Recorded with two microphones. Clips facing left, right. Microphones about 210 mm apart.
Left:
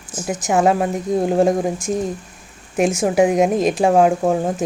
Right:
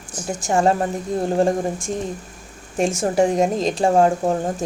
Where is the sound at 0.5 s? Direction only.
5° left (ahead or behind).